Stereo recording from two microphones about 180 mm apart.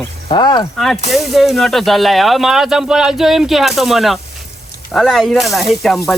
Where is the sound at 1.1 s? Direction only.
Centre (ahead or behind).